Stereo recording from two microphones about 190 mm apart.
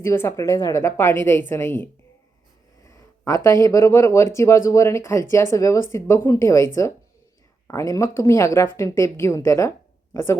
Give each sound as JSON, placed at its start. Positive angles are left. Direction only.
{"t": 0.0, "sound": "speech", "side_deg": 15}
{"t": 7.7, "sound": "speech", "side_deg": 15}